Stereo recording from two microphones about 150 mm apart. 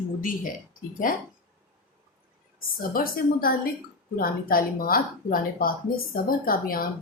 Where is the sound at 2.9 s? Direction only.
75° left (ahead or behind).